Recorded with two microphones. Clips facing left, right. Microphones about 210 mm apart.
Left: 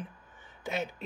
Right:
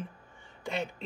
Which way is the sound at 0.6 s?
5° left (ahead or behind).